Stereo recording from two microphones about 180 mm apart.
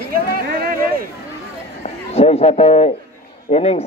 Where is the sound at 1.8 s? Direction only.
35° left (ahead or behind).